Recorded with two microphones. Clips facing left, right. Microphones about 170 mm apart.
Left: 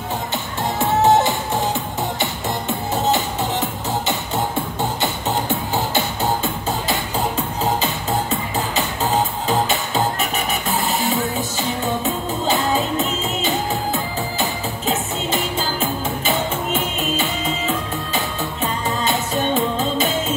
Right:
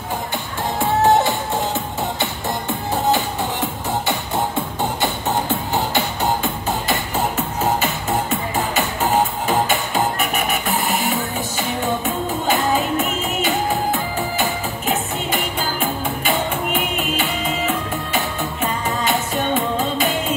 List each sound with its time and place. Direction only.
0.7 s music: 20° left (ahead or behind)
5.8 s music: 20° right (ahead or behind)
8.1 s music: 20° right (ahead or behind)
17.6 s music: 20° right (ahead or behind)
19.1 s music: centre (ahead or behind)